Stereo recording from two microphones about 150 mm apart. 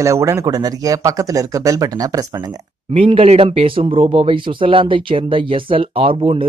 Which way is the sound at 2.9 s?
40° right (ahead or behind).